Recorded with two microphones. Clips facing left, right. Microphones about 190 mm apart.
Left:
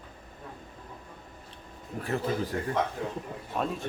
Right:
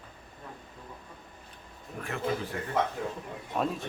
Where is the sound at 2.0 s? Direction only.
35° left (ahead or behind).